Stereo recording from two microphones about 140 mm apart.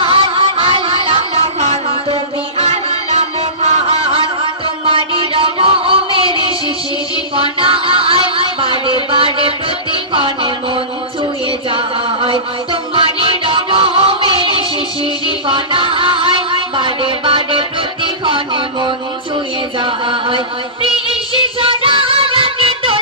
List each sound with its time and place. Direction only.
0.0 s a sound: 40° right (ahead or behind)
2.6 s music: 50° right (ahead or behind)
4.9 s a sound: 40° right (ahead or behind)
6.1 s music: 40° right (ahead or behind)
10.1 s a sound: 35° right (ahead or behind)
11.7 s chant: 40° right (ahead or behind)
12.9 s music: 40° right (ahead or behind)
19.8 s chant: 35° right (ahead or behind)
20.8 s music: 40° right (ahead or behind)